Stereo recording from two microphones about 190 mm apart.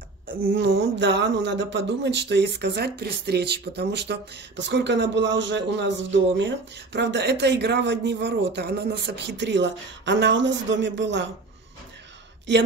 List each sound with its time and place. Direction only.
0.4 s speech: 55° right (ahead or behind)
12.5 s a woman's voice: 70° right (ahead or behind)